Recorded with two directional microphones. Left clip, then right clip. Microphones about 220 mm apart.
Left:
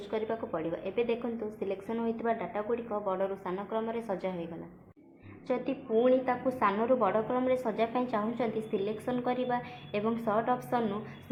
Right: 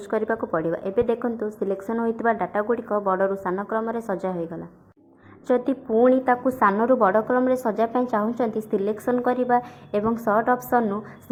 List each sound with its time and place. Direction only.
0.1 s a woman's voice: 30° right (ahead or behind)
5.5 s a woman's voice: 35° right (ahead or behind)